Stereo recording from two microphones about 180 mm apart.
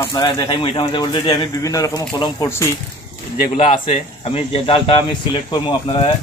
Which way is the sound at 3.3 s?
45° left (ahead or behind).